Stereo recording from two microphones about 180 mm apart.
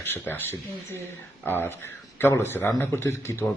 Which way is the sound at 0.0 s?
10° left (ahead or behind).